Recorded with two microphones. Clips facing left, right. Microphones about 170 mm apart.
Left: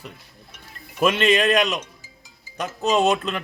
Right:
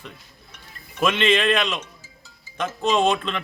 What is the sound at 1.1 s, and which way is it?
Speech, 40° left (ahead or behind).